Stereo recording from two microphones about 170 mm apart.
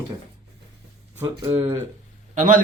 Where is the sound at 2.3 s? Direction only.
50° right (ahead or behind).